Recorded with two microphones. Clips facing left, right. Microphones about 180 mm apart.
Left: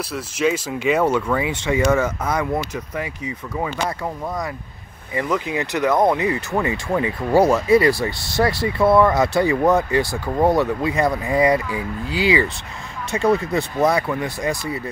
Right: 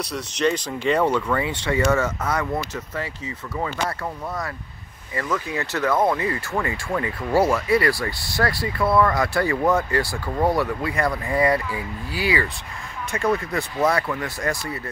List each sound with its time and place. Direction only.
0.1 s speech: 5° left (ahead or behind)
5.1 s speech: 15° left (ahead or behind)